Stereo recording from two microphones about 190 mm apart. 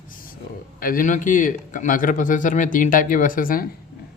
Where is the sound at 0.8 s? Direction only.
45° left (ahead or behind).